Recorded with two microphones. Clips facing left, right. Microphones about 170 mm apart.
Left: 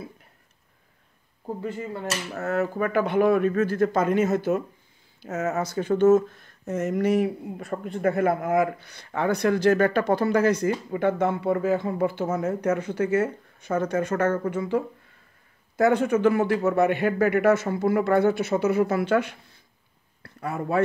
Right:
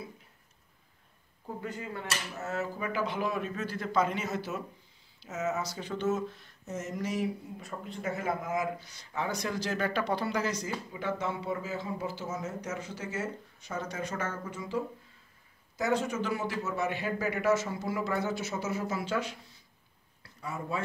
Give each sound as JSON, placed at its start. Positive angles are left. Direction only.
{"t": 1.6, "sound": "speech", "side_deg": 25}
{"t": 2.3, "sound": "speech", "side_deg": 60}